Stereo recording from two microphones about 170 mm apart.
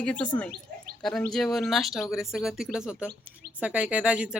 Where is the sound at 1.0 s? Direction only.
Centre (ahead or behind).